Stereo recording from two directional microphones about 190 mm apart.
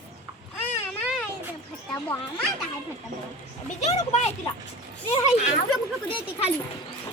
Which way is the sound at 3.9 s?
35° left (ahead or behind).